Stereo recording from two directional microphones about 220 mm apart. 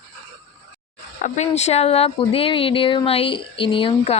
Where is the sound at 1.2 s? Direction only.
35° left (ahead or behind).